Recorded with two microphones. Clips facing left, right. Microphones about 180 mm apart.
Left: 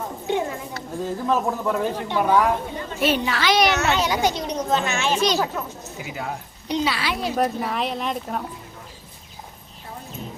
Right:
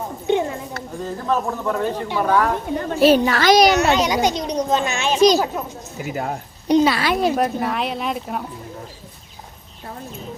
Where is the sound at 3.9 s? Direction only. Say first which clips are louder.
Right 3 dB; 15° right (ahead or behind).